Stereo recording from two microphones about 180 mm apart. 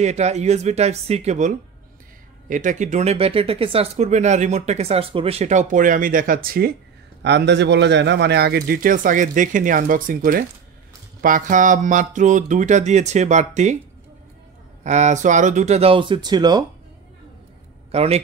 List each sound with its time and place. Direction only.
0.0 s speech: 40° right (ahead or behind); by 6.8 s 55° right (ahead or behind)
7.2 s speech: 75° right (ahead or behind); by 13.7 s 40° right (ahead or behind)
14.8 s speech: 40° right (ahead or behind); by 16.6 s 25° right (ahead or behind)
17.9 s speech: 35° right (ahead or behind)